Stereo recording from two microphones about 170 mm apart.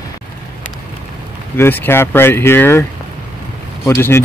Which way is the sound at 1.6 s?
15° left (ahead or behind).